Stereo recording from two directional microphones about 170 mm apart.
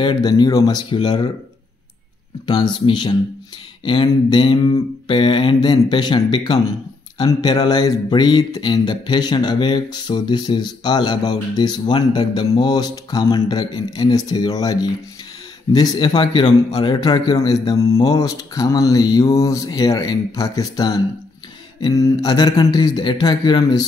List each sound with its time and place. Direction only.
0.0 s speech: 25° left (ahead or behind)
2.4 s speech: 25° left (ahead or behind)